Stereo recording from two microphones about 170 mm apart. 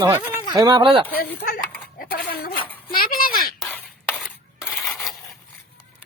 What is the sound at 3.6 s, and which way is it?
Cutlery, 10° left (ahead or behind).